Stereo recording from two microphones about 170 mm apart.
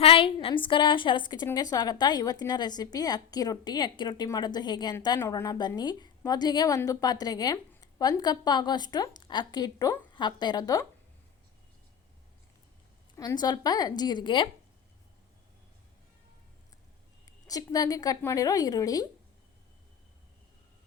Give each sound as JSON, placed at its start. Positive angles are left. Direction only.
{"t": 0.0, "sound": "a woman's voice", "side_deg": 35}
{"t": 13.1, "sound": "a woman's voice", "side_deg": 25}
{"t": 17.2, "sound": "a woman's voice", "side_deg": 20}